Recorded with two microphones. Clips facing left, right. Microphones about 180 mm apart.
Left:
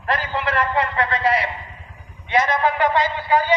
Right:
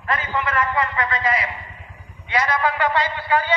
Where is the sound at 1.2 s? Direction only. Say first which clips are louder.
Left 3 dB; 30° left (ahead or behind).